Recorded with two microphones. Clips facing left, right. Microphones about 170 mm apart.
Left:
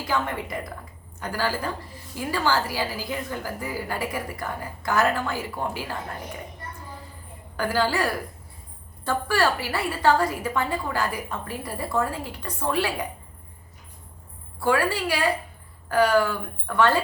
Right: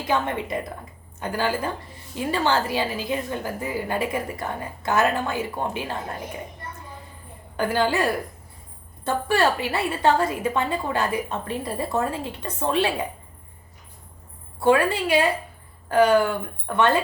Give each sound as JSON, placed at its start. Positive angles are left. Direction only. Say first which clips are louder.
{"t": 0.0, "sound": "a woman's voice", "louder": "right 3 dB", "side_deg": -25}
{"t": 7.5, "sound": "a woman's voice", "louder": "right 2 dB", "side_deg": -20}
{"t": 14.6, "sound": "a woman's voice", "louder": "right 4 dB", "side_deg": -20}